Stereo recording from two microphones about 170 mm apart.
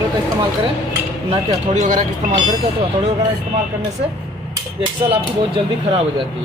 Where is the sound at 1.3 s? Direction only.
45° right (ahead or behind).